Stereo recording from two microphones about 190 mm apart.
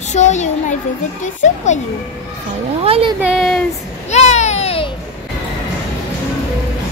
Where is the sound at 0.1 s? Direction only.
40° left (ahead or behind).